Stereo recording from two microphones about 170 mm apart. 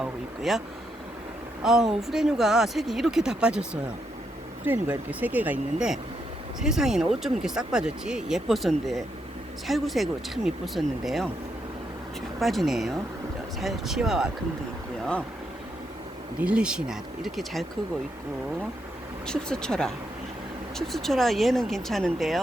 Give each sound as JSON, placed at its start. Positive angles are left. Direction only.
{"t": 0.0, "sound": "a sound", "side_deg": 0}
{"t": 1.6, "sound": "speech", "side_deg": 0}
{"t": 12.4, "sound": "speech", "side_deg": 0}
{"t": 16.4, "sound": "speech", "side_deg": -5}
{"t": 19.3, "sound": "speech", "side_deg": 5}